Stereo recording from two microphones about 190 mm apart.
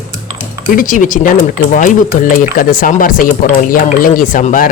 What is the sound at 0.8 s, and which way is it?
Speech, 45° left (ahead or behind).